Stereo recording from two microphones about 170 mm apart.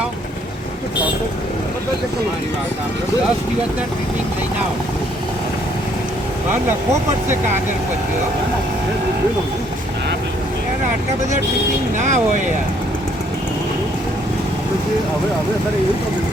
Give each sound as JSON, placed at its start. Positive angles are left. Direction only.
{"t": 11.9, "sound": "speech", "side_deg": -45}